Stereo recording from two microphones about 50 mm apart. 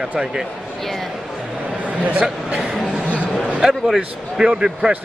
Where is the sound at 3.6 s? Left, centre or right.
Centre.